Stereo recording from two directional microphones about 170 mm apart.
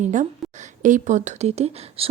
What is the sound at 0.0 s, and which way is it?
Speech, 45° right (ahead or behind).